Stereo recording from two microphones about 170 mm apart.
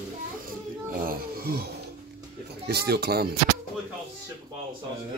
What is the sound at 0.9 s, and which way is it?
Speech, 60° right (ahead or behind).